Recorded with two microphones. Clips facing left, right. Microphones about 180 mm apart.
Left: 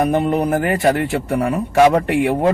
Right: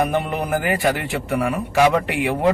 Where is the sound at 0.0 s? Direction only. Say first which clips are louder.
Left 5 dB; 30° left (ahead or behind).